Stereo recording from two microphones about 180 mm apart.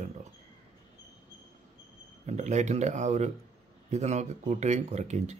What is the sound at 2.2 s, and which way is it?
A man's voice, 40° right (ahead or behind).